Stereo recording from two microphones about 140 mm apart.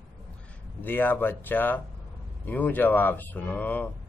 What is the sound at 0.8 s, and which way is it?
Speech, 15° left (ahead or behind).